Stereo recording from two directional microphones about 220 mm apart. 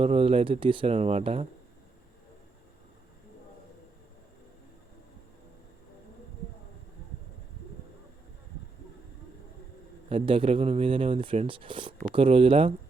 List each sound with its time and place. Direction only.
0.0 s speech: 25° right (ahead or behind)
10.1 s speech: 25° right (ahead or behind)